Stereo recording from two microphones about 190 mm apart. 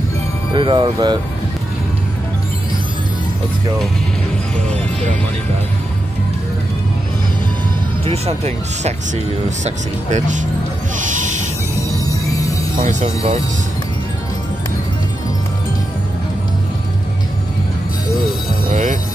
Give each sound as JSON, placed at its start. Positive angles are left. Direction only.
{"t": 0.5, "sound": "speech", "side_deg": -25}
{"t": 8.0, "sound": "speech", "side_deg": -35}
{"t": 12.8, "sound": "speech", "side_deg": -35}
{"t": 18.7, "sound": "music", "side_deg": -40}